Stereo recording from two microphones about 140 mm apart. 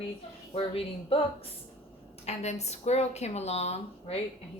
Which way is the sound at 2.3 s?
55° left (ahead or behind).